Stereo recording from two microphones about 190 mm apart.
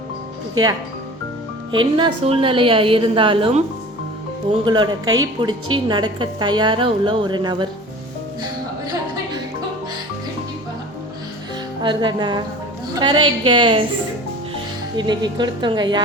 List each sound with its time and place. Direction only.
0.5 s a woman's voice: 20° right (ahead or behind)
4.6 s a woman's voice: 20° right (ahead or behind)
11.8 s a woman's voice: 25° right (ahead or behind)
14.9 s a woman's voice: 25° right (ahead or behind)